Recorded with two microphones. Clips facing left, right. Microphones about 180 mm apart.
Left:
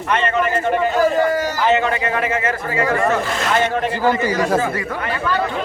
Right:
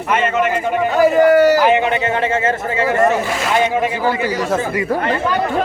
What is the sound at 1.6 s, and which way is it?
A man's voice, 15° right (ahead or behind).